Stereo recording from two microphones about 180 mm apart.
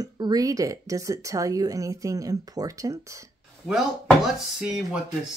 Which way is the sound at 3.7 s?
Centre (ahead or behind).